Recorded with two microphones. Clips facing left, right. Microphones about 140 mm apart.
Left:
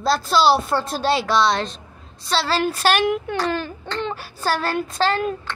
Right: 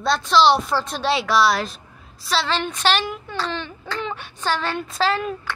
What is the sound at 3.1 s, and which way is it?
Speech, 60° left (ahead or behind).